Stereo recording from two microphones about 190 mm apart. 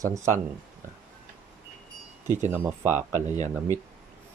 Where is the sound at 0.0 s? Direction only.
15° right (ahead or behind).